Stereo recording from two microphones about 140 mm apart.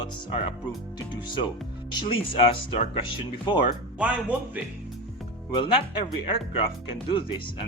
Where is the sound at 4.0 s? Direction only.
10° right (ahead or behind).